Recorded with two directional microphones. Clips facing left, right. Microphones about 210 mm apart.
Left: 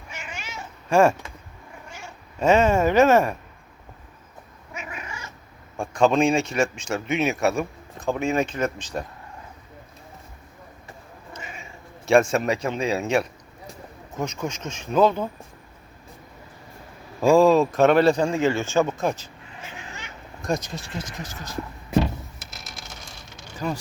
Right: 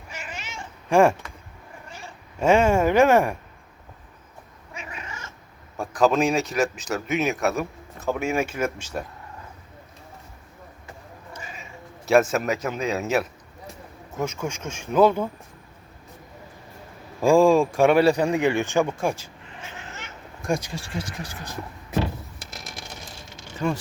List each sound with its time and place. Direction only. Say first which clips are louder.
0.2 s cat: even; centre (ahead or behind)
0.9 s speech: even; 15° right (ahead or behind)
2.4 s speech: even; 10° right (ahead or behind)
4.7 s cat: left 2 dB; 30° right (ahead or behind)
5.8 s speech: left 1 dB; 5° right (ahead or behind)
12.0 s speech: left 1 dB; centre (ahead or behind)
17.2 s speech: left 1 dB; 10° right (ahead or behind)
20.5 s speech: right 1 dB; 10° right (ahead or behind)